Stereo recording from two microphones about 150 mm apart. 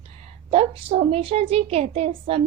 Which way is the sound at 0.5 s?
40° right (ahead or behind).